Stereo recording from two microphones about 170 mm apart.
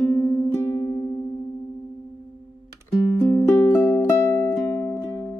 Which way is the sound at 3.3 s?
15° left (ahead or behind).